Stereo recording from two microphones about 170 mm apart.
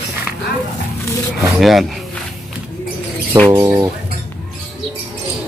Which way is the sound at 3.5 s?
25° right (ahead or behind).